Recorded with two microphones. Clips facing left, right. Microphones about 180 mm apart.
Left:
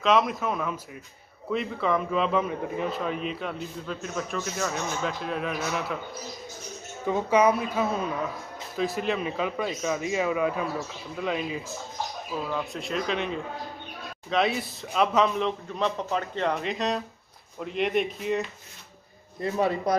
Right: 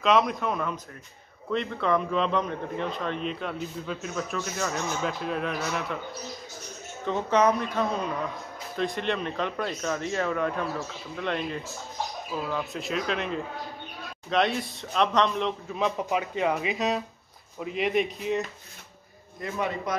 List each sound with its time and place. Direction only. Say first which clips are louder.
0.0 s a man's voice: even; centre (ahead or behind)
7.1 s a man's voice: left 1 dB; 10° left (ahead or behind)
19.4 s speech: left 5 dB; 30° left (ahead or behind)